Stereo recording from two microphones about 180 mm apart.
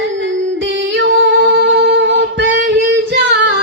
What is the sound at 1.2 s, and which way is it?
Singing, 90° right.